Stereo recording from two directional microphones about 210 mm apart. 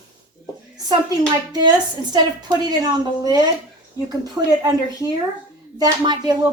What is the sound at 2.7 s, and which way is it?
Speech, 20° right (ahead or behind).